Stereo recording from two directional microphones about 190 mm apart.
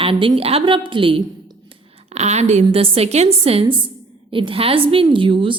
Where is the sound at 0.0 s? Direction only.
30° right (ahead or behind).